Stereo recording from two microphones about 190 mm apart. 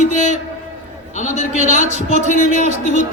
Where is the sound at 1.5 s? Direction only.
40° right (ahead or behind).